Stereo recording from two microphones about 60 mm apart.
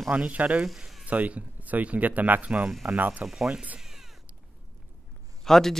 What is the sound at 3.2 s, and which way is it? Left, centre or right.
Speech, centre.